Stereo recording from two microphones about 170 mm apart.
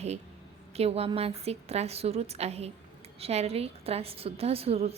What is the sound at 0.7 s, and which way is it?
Speech, 35° right (ahead or behind).